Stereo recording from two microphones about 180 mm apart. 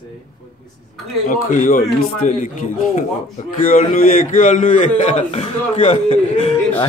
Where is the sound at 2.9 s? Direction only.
40° left (ahead or behind).